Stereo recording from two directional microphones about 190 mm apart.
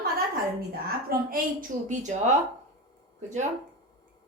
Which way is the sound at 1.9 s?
40° right (ahead or behind).